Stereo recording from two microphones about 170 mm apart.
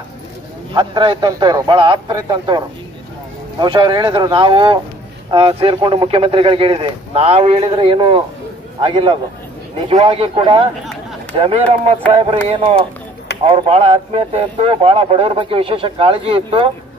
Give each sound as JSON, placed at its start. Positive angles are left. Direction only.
{"t": 0.7, "sound": "a man's voice", "side_deg": -25}